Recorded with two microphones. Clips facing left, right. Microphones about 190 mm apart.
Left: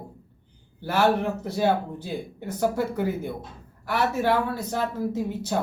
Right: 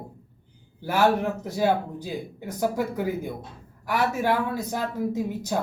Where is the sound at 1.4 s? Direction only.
10° right (ahead or behind).